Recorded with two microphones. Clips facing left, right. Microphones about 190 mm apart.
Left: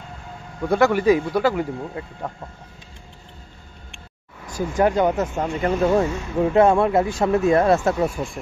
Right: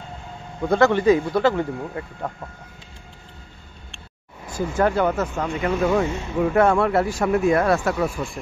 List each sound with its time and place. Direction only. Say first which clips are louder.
0.7 s speech: even; 10° left (ahead or behind)
4.5 s speech: left 1 dB; 15° left (ahead or behind)
5.6 s speech: left 2 dB; 35° left (ahead or behind)
6.5 s speech: left 2 dB; 20° left (ahead or behind)